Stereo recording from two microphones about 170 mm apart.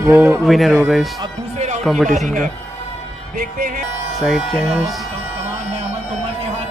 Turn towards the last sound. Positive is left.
turn(degrees=0)  # may be behind; listen again after turning